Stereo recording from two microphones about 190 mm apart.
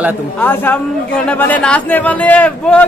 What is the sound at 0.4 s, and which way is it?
Speech, 10° left (ahead or behind).